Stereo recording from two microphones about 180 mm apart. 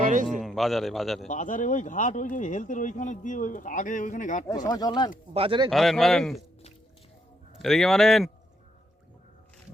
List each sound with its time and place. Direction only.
0.0 s a sound: 45° right (ahead or behind)
0.3 s a man's voice: centre (ahead or behind)
1.3 s speech: 45° left (ahead or behind)
4.4 s speech: 20° left (ahead or behind)
5.3 s speech: 30° right (ahead or behind)
5.7 s speech: centre (ahead or behind)
7.6 s speech: centre (ahead or behind)